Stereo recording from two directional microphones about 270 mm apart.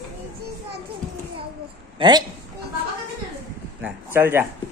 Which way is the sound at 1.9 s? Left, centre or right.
Centre.